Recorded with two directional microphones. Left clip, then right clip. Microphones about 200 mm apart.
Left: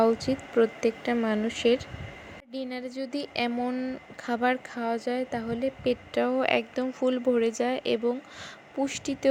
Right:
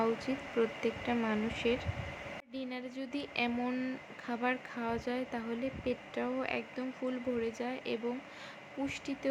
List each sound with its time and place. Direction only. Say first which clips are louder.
0.0 s speech: left 9 dB; 30° left (ahead or behind)
4.3 s speech: left 8 dB; 30° left (ahead or behind)